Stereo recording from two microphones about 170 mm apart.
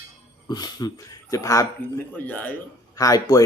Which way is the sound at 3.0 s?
20° left (ahead or behind).